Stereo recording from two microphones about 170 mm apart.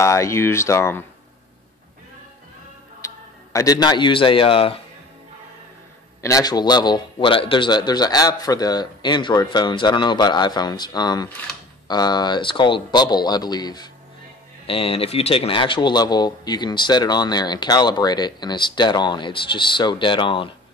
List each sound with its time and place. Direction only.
0.0 s speech: 15° left (ahead or behind)
3.0 s music: 15° left (ahead or behind)
3.5 s a man's voice: 20° left (ahead or behind)
6.2 s a man's voice: 20° left (ahead or behind)